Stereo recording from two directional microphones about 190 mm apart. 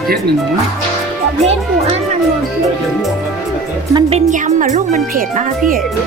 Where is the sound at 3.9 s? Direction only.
35° right (ahead or behind).